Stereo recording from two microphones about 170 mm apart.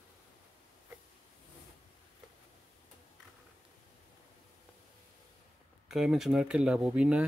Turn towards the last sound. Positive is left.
turn(degrees=-5)  # may be behind; listen again after turning